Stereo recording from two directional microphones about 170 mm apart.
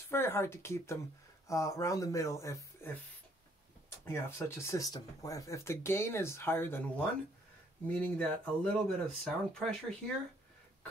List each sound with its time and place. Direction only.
0.1 s speech: 15° left (ahead or behind)
4.0 s speech: 15° left (ahead or behind)
8.2 s speech: 5° left (ahead or behind)